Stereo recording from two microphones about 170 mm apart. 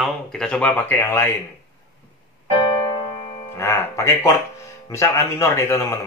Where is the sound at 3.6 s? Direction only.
15° left (ahead or behind).